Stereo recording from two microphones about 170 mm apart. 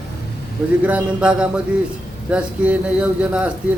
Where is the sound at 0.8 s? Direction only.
5° right (ahead or behind).